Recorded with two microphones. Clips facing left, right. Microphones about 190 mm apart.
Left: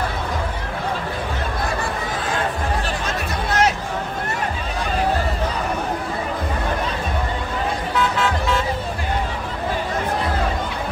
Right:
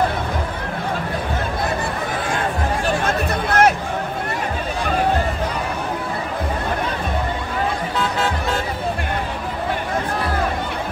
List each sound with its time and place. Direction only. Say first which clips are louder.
3.0 s music: right 4 dB; 55° right (ahead or behind)